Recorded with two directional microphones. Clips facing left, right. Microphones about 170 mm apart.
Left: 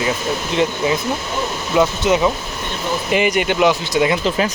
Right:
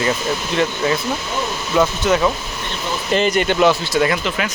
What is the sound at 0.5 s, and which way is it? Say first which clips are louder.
Speech: left 1 dB; 15° left (ahead or behind).